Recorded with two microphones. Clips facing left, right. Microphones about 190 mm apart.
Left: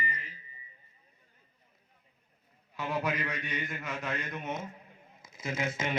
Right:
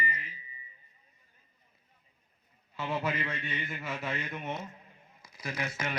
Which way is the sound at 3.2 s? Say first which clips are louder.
Even; 15° left (ahead or behind).